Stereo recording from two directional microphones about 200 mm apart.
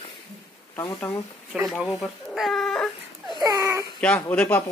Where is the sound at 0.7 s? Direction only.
15° left (ahead or behind).